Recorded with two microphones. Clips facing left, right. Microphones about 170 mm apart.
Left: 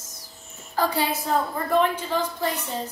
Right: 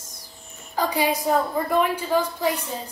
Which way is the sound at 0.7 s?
15° right (ahead or behind).